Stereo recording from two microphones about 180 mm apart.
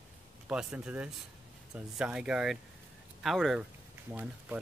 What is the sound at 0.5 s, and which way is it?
Speech, 5° right (ahead or behind).